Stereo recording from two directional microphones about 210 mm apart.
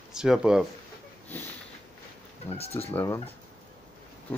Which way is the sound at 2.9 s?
10° left (ahead or behind).